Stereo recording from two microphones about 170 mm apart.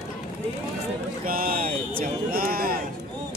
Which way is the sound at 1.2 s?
55° right (ahead or behind).